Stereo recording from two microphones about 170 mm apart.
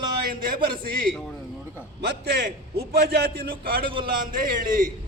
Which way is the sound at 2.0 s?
75° right (ahead or behind).